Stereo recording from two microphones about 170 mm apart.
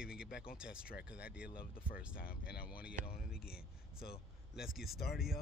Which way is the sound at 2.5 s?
60° left (ahead or behind).